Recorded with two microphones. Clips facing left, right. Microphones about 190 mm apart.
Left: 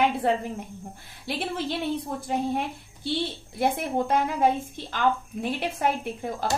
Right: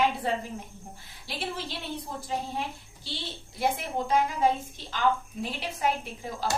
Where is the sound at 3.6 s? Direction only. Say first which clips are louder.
Left 4 dB; 55° left (ahead or behind).